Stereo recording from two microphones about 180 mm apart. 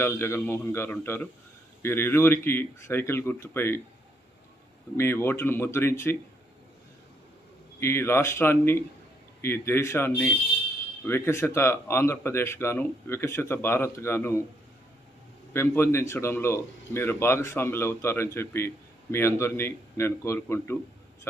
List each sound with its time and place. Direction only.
0.0 s speech: 15° left (ahead or behind)
4.9 s speech: 15° left (ahead or behind)
7.8 s speech: 15° left (ahead or behind)
15.5 s speech: 15° left (ahead or behind)